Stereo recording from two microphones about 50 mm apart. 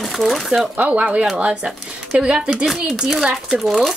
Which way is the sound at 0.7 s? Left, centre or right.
Right.